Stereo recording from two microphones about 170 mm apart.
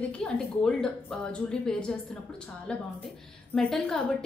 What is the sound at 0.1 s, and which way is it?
Speech, 5° left (ahead or behind).